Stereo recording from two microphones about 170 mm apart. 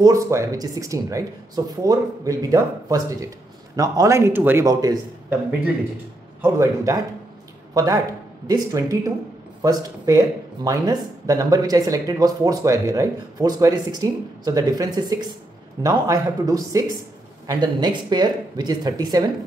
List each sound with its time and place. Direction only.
0.0 s speech: 20° right (ahead or behind)
6.4 s a man's voice: 20° right (ahead or behind)